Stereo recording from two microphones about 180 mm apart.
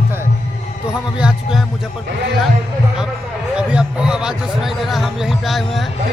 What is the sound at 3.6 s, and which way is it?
Speech, 5° right (ahead or behind).